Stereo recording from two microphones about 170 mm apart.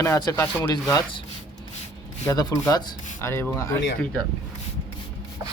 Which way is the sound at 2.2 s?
20° left (ahead or behind).